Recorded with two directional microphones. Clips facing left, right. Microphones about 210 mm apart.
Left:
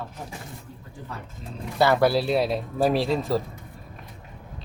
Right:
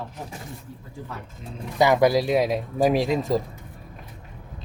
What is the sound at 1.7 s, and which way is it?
Speech, 15° right (ahead or behind).